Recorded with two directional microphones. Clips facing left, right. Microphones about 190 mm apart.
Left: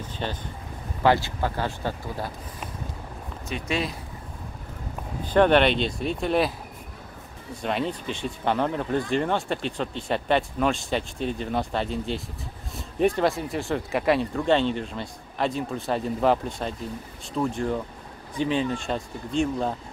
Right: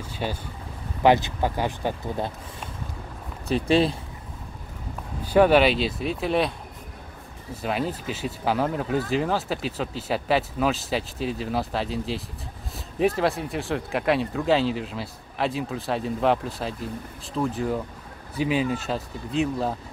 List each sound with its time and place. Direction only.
0.0 s speech: 10° right (ahead or behind)
3.4 s speech: 35° right (ahead or behind)
5.2 s speech: 5° right (ahead or behind)
7.6 s speech: 5° right (ahead or behind)